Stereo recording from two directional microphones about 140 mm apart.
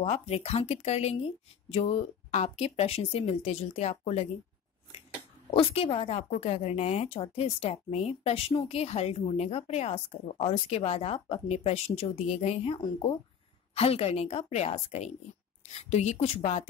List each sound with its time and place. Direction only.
0.0 s a woman's voice: 45° left (ahead or behind)
5.5 s a woman's voice: 45° left (ahead or behind)